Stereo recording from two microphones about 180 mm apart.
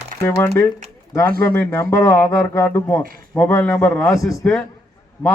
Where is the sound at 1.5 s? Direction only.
15° left (ahead or behind).